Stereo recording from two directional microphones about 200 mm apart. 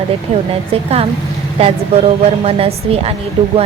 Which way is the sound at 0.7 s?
30° right (ahead or behind).